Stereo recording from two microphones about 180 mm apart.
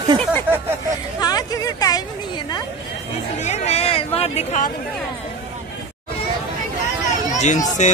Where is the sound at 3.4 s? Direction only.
35° left (ahead or behind).